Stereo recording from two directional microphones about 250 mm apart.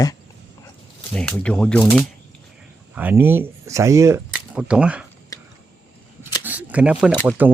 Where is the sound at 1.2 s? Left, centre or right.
Centre.